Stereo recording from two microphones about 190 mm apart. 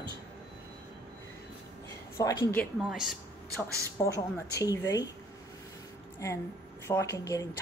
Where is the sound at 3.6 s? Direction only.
15° left (ahead or behind).